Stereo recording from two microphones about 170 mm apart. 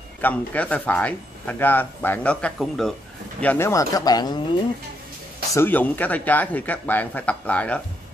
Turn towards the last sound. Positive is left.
turn(degrees=10)  # may be behind; listen again after turning